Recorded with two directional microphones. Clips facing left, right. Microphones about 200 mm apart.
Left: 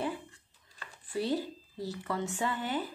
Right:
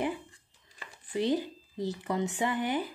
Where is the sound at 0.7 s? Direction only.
20° right (ahead or behind).